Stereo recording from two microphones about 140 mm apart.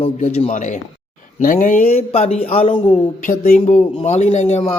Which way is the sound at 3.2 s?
75° left (ahead or behind).